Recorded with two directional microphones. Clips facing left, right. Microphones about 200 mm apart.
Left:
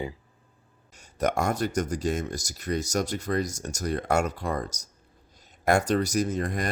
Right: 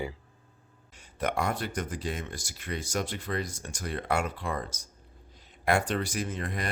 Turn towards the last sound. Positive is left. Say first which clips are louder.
# left 6 dB
turn(degrees=45)  # may be behind; listen again after turning